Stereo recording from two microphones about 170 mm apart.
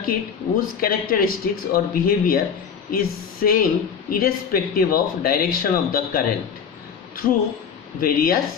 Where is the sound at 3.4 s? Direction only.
55° left (ahead or behind).